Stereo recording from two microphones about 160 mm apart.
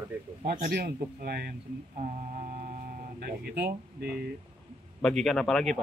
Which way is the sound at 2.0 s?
55° right (ahead or behind).